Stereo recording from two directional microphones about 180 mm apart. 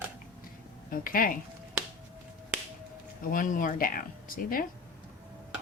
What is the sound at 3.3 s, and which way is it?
Speech, 50° left (ahead or behind).